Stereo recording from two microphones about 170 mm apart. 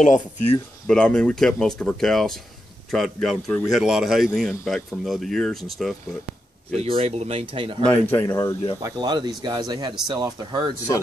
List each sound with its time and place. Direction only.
0.8 s a man's voice: 5° left (ahead or behind)
6.7 s speech: 35° right (ahead or behind)
7.8 s speech: 10° left (ahead or behind)
8.8 s speech: 25° right (ahead or behind)